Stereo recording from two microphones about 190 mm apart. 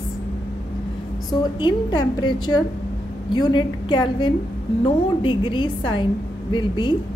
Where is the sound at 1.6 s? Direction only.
25° left (ahead or behind).